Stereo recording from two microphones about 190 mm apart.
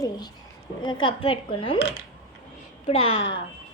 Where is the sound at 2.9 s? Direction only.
30° left (ahead or behind).